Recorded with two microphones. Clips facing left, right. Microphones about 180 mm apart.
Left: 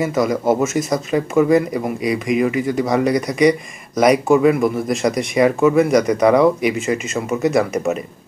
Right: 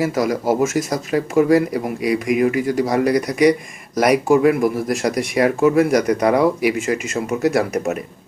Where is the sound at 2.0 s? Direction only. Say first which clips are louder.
Right 1 dB; 60° right (ahead or behind).